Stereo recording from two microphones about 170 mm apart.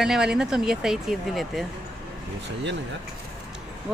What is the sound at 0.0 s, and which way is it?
Speech, 5° right (ahead or behind).